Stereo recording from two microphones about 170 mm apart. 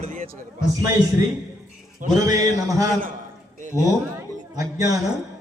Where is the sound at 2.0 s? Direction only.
50° right (ahead or behind).